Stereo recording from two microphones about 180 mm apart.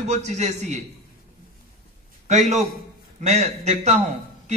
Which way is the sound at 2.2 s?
40° right (ahead or behind).